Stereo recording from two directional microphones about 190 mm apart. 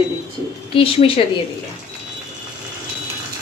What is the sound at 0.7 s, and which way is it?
Speech, 30° left (ahead or behind).